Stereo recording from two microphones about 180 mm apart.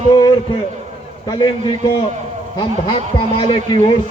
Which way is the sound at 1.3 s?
25° left (ahead or behind).